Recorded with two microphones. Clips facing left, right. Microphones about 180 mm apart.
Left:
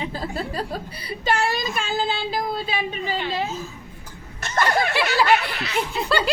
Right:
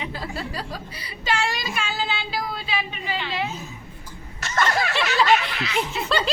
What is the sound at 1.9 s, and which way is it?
A woman's voice, 50° left (ahead or behind).